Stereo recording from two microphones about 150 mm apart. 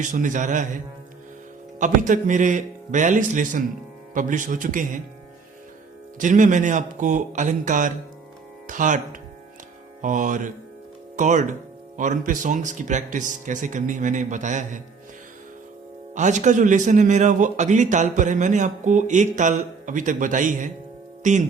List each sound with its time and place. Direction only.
0.0 s a man's voice: 55° right (ahead or behind)
1.8 s a man's voice: 60° right (ahead or behind)
6.1 s a man's voice: 60° right (ahead or behind)
10.0 s a man's voice: 60° right (ahead or behind)
16.1 s a man's voice: 55° right (ahead or behind)